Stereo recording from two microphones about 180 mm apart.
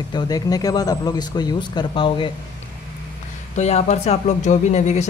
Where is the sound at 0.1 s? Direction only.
20° left (ahead or behind).